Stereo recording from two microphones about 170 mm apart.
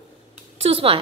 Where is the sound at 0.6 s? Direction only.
35° right (ahead or behind).